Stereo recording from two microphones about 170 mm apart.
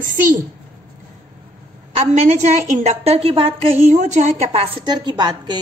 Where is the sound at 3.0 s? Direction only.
35° right (ahead or behind).